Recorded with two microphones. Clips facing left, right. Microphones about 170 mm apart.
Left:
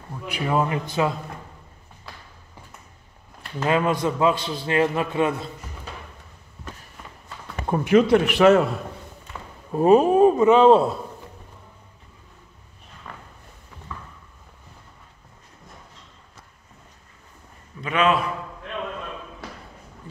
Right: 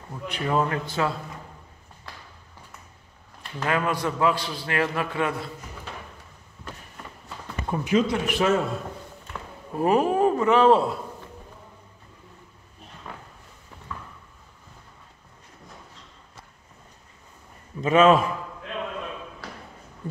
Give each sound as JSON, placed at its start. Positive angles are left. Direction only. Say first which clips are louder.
{"t": 0.3, "sound": "a man's voice", "louder": "left 2 dB", "side_deg": 15}
{"t": 3.6, "sound": "a man's voice", "louder": "left 4 dB", "side_deg": 20}
{"t": 7.7, "sound": "speech", "louder": "left 6 dB", "side_deg": 55}
{"t": 9.8, "sound": "a man's voice", "louder": "left 6 dB", "side_deg": 20}
{"t": 17.7, "sound": "a man's voice", "louder": "right 4 dB", "side_deg": -40}